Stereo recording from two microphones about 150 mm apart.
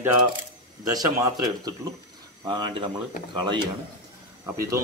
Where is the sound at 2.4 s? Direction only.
30° right (ahead or behind).